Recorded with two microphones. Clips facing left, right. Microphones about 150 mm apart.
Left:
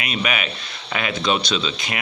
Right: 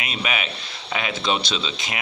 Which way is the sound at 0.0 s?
25° right (ahead or behind).